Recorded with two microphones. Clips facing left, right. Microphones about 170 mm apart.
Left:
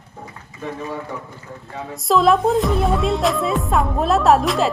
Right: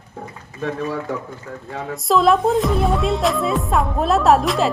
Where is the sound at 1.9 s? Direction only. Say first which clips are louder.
Even; centre (ahead or behind).